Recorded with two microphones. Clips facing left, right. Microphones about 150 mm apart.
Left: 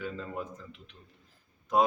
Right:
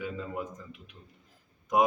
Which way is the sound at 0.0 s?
15° right (ahead or behind).